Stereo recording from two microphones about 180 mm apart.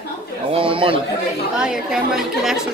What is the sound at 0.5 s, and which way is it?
Speech, 30° right (ahead or behind).